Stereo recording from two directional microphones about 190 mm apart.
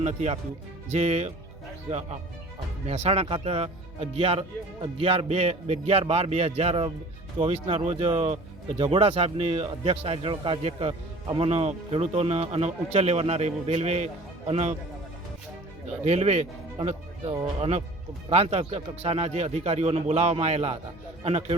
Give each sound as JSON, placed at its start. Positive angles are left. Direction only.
{"t": 0.0, "sound": "speech", "side_deg": -40}
{"t": 2.8, "sound": "speech", "side_deg": -35}
{"t": 16.0, "sound": "speech", "side_deg": -35}